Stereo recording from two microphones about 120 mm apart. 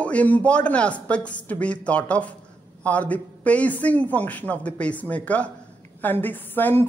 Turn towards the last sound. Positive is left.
turn(degrees=15)  # may be behind; listen again after turning